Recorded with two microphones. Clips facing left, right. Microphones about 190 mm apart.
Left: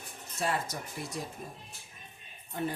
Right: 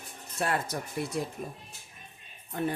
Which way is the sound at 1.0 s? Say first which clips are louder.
Right 8 dB; 65° right (ahead or behind).